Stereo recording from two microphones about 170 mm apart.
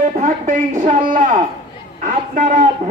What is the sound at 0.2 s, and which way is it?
A man's voice, 45° right (ahead or behind).